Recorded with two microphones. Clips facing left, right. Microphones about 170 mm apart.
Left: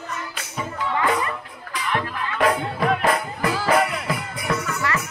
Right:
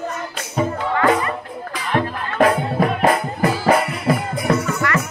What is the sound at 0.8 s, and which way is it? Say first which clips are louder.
Music: right 3 dB; 45° right (ahead or behind).